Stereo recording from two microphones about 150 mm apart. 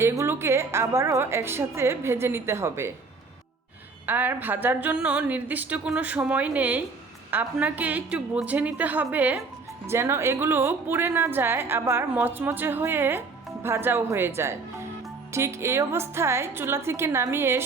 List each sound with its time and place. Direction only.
0.0 s a woman's voice: 20° right (ahead or behind)
4.0 s a woman's voice: 15° right (ahead or behind)